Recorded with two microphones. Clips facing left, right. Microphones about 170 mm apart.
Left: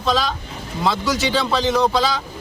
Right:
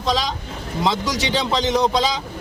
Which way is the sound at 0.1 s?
15° right (ahead or behind).